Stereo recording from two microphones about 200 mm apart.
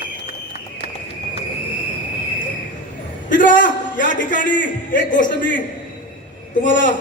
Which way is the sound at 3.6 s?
40° left (ahead or behind).